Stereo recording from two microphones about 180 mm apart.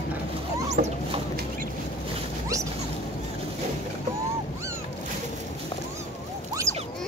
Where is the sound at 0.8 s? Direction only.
50° right (ahead or behind).